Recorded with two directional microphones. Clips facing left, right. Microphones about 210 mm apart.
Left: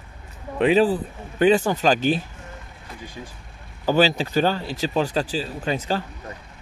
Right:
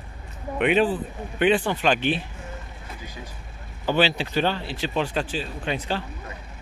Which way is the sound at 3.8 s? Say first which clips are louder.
Left 3 dB; 40° left (ahead or behind).